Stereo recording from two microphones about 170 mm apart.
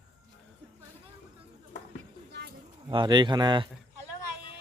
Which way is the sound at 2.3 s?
75° right (ahead or behind).